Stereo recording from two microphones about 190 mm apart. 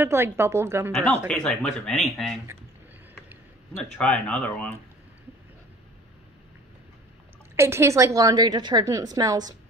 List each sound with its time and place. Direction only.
0.0 s a woman's voice: 15° right (ahead or behind)
0.9 s speech: 5° left (ahead or behind)
4.0 s speech: 5° left (ahead or behind)
7.5 s a woman's voice: 15° right (ahead or behind)